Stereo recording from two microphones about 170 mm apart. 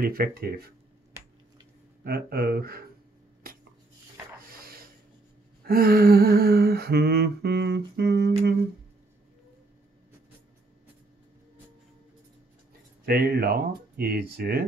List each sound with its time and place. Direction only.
0.0 s speech: 60° right (ahead or behind)
2.0 s speech: 65° right (ahead or behind)
3.4 s dishes: 55° right (ahead or behind)
5.7 s humming: 65° right (ahead or behind)
13.0 s speech: 65° right (ahead or behind)